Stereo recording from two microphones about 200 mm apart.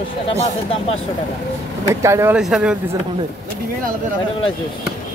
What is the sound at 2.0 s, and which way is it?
Speech, 15° right (ahead or behind).